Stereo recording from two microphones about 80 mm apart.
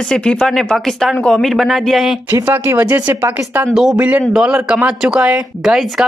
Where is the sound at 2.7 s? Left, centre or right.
Right.